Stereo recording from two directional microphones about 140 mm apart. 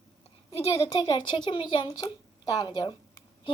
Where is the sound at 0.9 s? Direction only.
30° left (ahead or behind).